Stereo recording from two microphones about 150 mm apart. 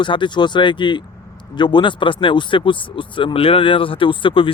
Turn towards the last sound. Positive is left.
turn(degrees=35)  # may be behind; listen again after turning